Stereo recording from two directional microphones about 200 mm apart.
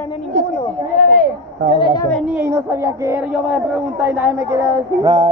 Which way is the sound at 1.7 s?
25° left (ahead or behind).